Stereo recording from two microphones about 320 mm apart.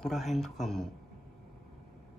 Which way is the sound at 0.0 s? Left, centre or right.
Centre.